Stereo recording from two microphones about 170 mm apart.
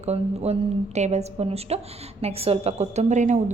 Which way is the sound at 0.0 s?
40° right (ahead or behind).